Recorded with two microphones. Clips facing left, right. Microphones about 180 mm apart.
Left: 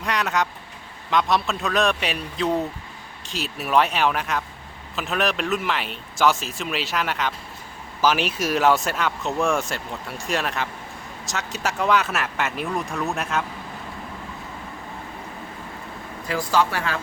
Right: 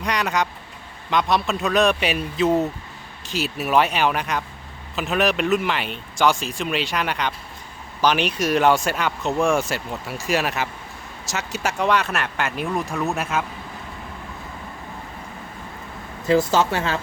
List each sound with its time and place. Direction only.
0.0 s speech: centre (ahead or behind)
16.2 s speech: 25° right (ahead or behind)